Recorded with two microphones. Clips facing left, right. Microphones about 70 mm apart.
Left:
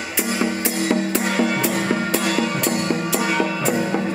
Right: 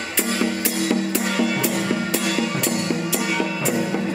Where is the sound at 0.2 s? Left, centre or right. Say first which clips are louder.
Left 1 dB; centre.